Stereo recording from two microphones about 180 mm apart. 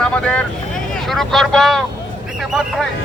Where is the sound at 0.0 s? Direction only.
5° left (ahead or behind).